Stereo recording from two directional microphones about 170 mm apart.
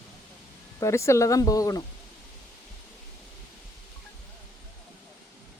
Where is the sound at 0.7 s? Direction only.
15° left (ahead or behind).